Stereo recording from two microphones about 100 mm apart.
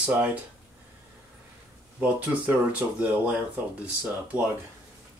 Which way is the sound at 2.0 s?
15° right (ahead or behind).